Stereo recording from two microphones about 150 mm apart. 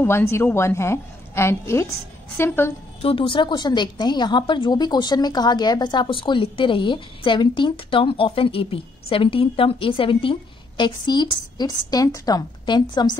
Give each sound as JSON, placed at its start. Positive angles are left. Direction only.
{"t": 0.0, "sound": "a woman's voice", "side_deg": 15}
{"t": 3.0, "sound": "a woman's voice", "side_deg": 35}